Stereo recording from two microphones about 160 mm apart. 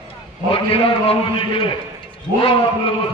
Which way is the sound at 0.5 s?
35° left (ahead or behind).